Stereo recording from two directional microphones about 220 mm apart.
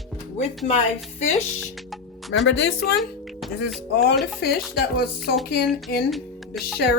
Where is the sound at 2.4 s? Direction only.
50° left (ahead or behind).